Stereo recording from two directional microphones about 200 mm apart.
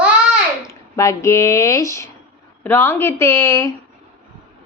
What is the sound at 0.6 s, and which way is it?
A woman's voice, 15° left (ahead or behind).